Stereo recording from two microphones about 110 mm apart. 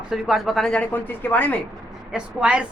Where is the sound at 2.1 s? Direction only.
10° right (ahead or behind).